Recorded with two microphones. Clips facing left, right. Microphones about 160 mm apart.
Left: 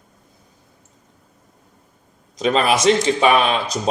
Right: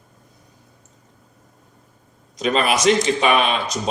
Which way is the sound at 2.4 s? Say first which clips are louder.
Left 2 dB; 35° left (ahead or behind).